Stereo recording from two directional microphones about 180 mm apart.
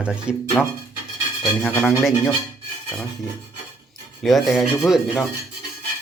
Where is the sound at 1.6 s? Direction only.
10° left (ahead or behind).